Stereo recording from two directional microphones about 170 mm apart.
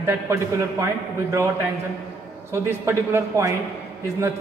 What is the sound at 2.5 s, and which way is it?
A man's voice, 15° right (ahead or behind).